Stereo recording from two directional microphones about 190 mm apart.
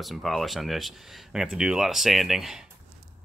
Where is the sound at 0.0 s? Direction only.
Centre (ahead or behind).